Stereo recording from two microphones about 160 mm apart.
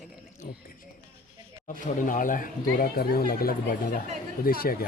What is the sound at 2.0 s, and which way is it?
Speech, 55° left (ahead or behind).